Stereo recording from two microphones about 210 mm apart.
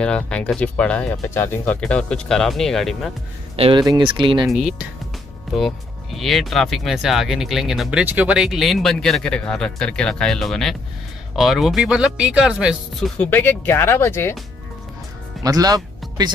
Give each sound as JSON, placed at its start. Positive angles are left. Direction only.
{"t": 0.0, "sound": "speech", "side_deg": 5}
{"t": 3.5, "sound": "speech", "side_deg": -25}
{"t": 4.5, "sound": "speech", "side_deg": 0}
{"t": 13.2, "sound": "speech", "side_deg": 10}
{"t": 15.4, "sound": "speech", "side_deg": -15}